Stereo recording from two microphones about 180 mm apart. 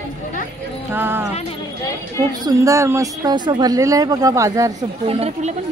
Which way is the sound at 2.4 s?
15° right (ahead or behind).